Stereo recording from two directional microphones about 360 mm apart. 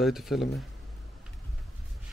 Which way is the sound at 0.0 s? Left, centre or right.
Centre.